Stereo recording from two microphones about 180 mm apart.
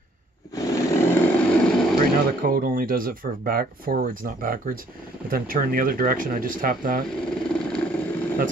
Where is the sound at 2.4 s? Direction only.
50° right (ahead or behind).